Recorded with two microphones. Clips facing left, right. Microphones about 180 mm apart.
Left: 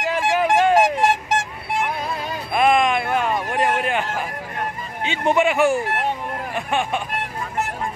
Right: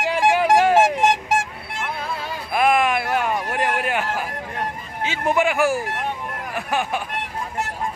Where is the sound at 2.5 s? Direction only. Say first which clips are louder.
Left 1 dB; 5° right (ahead or behind).